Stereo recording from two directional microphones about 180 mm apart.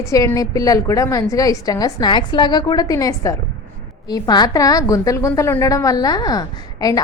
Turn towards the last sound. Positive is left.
turn(degrees=20)  # may be behind; listen again after turning